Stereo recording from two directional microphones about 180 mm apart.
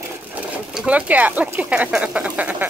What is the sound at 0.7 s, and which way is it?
Speech, 5° right (ahead or behind).